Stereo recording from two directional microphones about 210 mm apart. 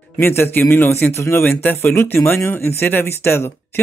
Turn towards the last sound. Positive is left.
turn(degrees=10)  # may be behind; listen again after turning